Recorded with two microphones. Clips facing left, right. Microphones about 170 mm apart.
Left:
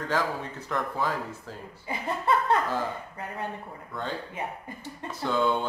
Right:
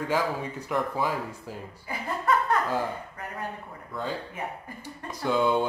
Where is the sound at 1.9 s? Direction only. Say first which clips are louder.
Left 1 dB; 25° left (ahead or behind).